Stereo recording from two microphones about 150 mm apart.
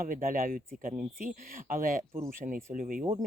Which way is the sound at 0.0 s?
70° right (ahead or behind).